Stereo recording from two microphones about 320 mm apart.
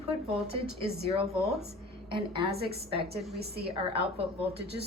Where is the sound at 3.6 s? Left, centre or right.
Centre.